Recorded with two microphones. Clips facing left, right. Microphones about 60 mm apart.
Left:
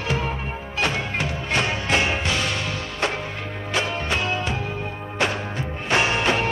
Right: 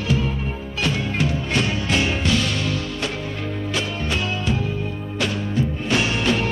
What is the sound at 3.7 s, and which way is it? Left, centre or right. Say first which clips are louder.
Music: left 3 dB; left.